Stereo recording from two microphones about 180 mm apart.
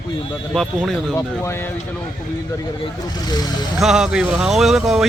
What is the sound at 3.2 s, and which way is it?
Speech, 20° left (ahead or behind).